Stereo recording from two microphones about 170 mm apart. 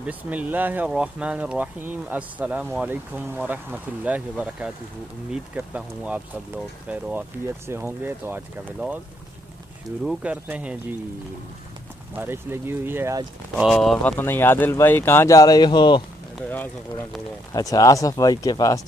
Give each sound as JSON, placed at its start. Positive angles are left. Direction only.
{"t": 0.0, "sound": "speech", "side_deg": -10}
{"t": 10.0, "sound": "speech", "side_deg": -10}
{"t": 12.2, "sound": "speech", "side_deg": -15}
{"t": 13.7, "sound": "speech", "side_deg": 0}
{"t": 17.5, "sound": "speech", "side_deg": 20}